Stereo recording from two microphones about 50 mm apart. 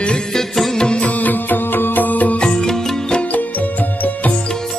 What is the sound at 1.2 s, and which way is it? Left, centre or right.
Music, left.